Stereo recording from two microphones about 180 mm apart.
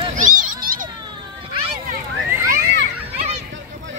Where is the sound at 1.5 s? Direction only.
30° right (ahead or behind).